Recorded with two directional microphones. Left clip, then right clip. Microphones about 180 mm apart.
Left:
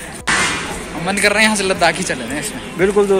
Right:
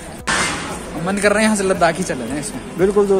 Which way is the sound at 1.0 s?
50° right (ahead or behind).